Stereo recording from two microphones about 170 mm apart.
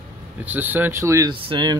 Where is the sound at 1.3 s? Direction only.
30° right (ahead or behind).